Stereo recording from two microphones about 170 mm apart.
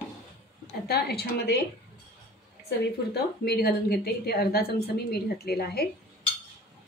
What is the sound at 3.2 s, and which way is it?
A woman's voice, 65° left (ahead or behind).